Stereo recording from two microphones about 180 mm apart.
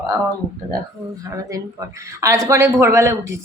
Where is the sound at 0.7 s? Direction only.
20° right (ahead or behind).